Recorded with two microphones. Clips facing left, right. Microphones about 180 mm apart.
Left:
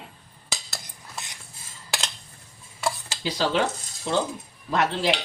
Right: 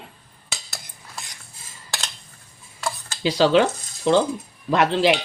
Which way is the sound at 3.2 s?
80° right.